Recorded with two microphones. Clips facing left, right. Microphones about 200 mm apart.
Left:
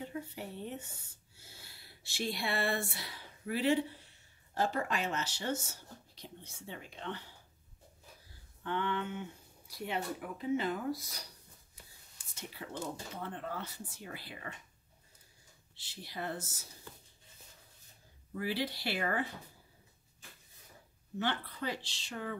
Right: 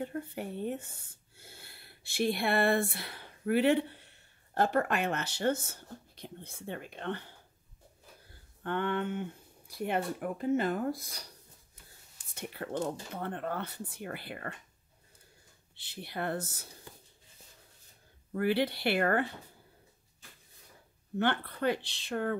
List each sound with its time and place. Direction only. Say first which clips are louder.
0.0 s speech: right 5 dB; 55° right (ahead or behind)
8.6 s speech: right 4 dB; 55° right (ahead or behind)
12.4 s speech: right 7 dB; 60° right (ahead or behind)
15.7 s speech: right 5 dB; 60° right (ahead or behind)
18.3 s speech: right 7 dB; 60° right (ahead or behind)
21.2 s speech: right 6 dB; 60° right (ahead or behind)